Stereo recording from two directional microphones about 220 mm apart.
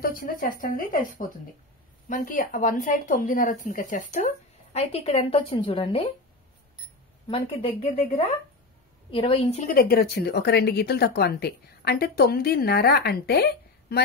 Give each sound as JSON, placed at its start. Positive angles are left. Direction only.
{"t": 0.0, "sound": "a woman's voice", "side_deg": 40}
{"t": 7.2, "sound": "a woman's voice", "side_deg": 25}
{"t": 9.1, "sound": "a woman's voice", "side_deg": 25}